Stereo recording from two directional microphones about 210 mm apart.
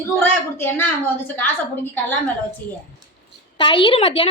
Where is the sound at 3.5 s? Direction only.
25° left (ahead or behind).